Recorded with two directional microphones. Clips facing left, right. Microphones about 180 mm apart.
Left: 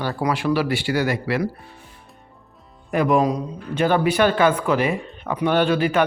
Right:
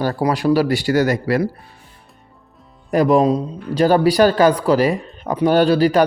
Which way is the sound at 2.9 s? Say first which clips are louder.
Right 4 dB; 35° right (ahead or behind).